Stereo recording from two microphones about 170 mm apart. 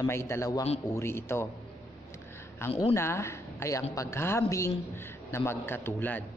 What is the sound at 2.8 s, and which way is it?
A woman's voice, 15° left (ahead or behind).